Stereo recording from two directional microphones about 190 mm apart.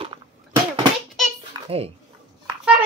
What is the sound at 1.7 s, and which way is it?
Speech, 30° right (ahead or behind).